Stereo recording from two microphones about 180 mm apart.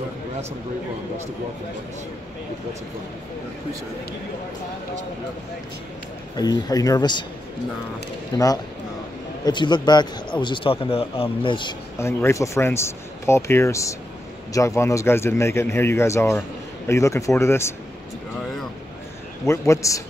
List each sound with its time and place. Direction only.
6.3 s a man's voice: 20° left (ahead or behind)
8.3 s a man's voice: 20° left (ahead or behind)
12.0 s speech: 15° left (ahead or behind)
19.4 s speech: 15° left (ahead or behind)